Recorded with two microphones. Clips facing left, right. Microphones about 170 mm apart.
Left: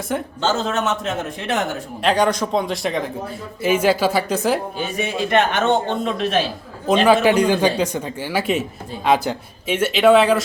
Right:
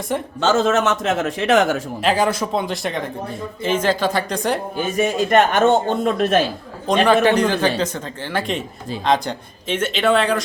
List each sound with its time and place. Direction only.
0.1 s speech: centre (ahead or behind)
0.4 s a man's voice: 80° right
2.0 s speech: 5° right (ahead or behind)
4.8 s a man's voice: 45° right (ahead or behind)
6.8 s speech: 5° left (ahead or behind)